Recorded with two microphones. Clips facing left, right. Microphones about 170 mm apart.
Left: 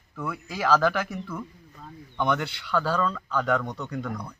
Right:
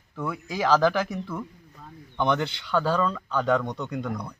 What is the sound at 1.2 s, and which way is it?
A man's voice, 15° right (ahead or behind).